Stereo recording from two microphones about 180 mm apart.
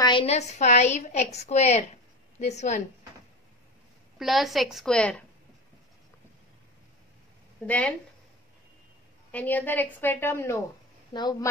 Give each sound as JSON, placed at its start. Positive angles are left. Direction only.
{"t": 0.0, "sound": "a woman's voice", "side_deg": 30}
{"t": 4.2, "sound": "a woman's voice", "side_deg": 0}
{"t": 7.6, "sound": "a woman's voice", "side_deg": 10}
{"t": 9.3, "sound": "a woman's voice", "side_deg": 10}